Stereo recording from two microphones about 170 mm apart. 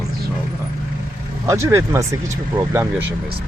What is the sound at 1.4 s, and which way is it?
Speech, 15° right (ahead or behind).